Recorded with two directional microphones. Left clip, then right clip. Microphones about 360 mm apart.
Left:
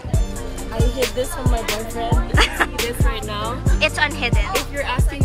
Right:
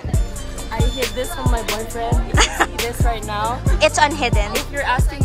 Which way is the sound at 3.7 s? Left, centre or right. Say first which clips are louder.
Right 4 dB; centre.